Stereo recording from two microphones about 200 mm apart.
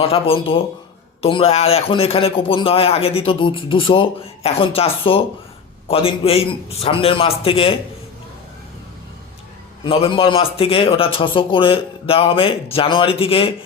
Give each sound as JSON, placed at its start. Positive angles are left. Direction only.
{"t": 0.0, "sound": "a man's voice", "side_deg": 30}
{"t": 9.8, "sound": "a man's voice", "side_deg": 25}